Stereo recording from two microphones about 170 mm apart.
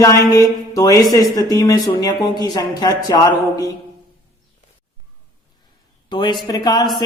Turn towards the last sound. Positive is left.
turn(degrees=25)  # may be behind; listen again after turning